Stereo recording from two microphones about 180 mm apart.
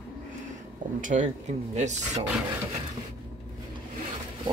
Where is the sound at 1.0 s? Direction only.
45° right (ahead or behind).